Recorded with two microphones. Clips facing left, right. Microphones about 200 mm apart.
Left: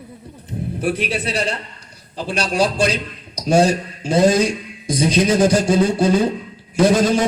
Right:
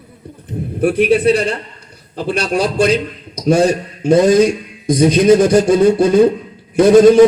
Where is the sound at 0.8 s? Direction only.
55° right (ahead or behind).